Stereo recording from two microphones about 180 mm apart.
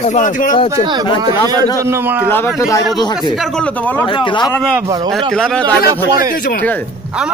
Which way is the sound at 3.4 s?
5° left (ahead or behind).